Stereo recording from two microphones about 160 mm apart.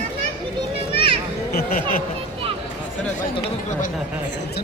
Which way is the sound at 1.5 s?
75° left (ahead or behind).